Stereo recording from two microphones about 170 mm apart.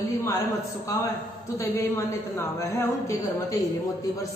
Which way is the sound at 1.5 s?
15° left (ahead or behind).